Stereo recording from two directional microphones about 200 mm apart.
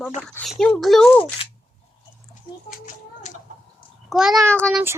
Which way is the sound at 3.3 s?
35° left (ahead or behind).